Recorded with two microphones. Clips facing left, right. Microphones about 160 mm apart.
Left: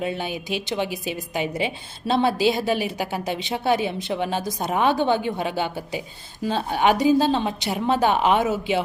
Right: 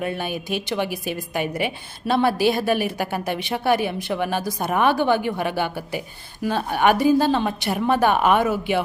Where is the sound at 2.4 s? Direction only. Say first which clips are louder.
Right 1 dB; 50° right (ahead or behind).